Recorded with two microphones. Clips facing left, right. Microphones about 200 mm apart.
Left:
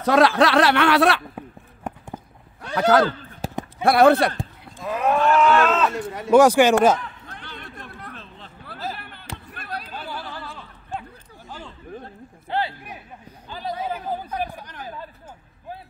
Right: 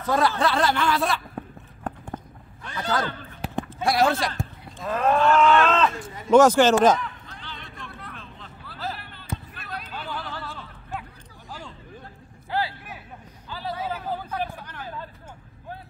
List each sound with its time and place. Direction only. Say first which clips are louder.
0.0 s speech: left 6 dB; 80° left
2.7 s speech: left 10 dB; 75° left (ahead or behind)
3.1 s a sound: left 3 dB; 45° left (ahead or behind)
3.8 s speech: left 7 dB; 60° left (ahead or behind)
4.7 s livestock: even; 10° left (ahead or behind)
5.9 s speech: left 3 dB; 65° left (ahead or behind)
6.3 s livestock: left 1 dB; 10° left (ahead or behind)
7.2 s vehicle: left 3 dB; 50° left (ahead or behind)
8.9 s basketball bounce: right 2 dB; 55° left (ahead or behind)
10.0 s a sound: even; centre (ahead or behind)
12.4 s a sound: left 2 dB; 20° left (ahead or behind)